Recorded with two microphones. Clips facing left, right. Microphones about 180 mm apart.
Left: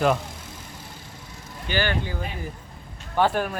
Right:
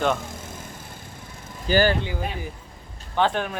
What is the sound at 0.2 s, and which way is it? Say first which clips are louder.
Vehicle: right 3 dB; 50° right (ahead or behind).